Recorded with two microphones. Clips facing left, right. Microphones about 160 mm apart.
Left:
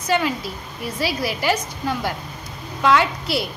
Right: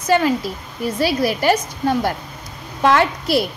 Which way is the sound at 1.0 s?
50° right (ahead or behind).